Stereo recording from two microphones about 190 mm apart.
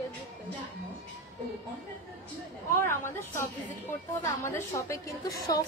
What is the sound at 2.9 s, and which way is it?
Speech, 15° left (ahead or behind).